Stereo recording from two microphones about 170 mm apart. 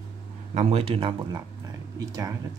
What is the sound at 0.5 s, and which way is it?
Speech, 35° right (ahead or behind).